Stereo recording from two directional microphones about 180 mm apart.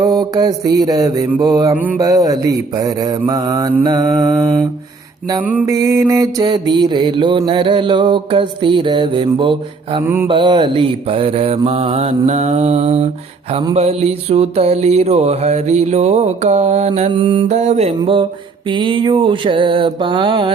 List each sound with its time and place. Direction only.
0.0 s mantra: 20° right (ahead or behind)
1.7 s mantra: 10° right (ahead or behind)
2.0 s mantra: 20° right (ahead or behind)
5.4 s mantra: 10° right (ahead or behind); by 17.1 s 40° right (ahead or behind)
17.1 s mantra: 25° right (ahead or behind)